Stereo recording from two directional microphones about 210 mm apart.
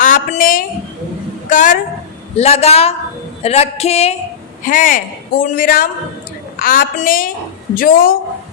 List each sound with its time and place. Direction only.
0.0 s a sound: 40° left (ahead or behind)
1.5 s a woman's voice: 35° left (ahead or behind)
4.6 s a woman's voice: 40° left (ahead or behind)